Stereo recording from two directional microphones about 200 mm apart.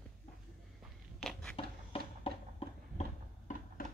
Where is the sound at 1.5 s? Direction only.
25° left (ahead or behind).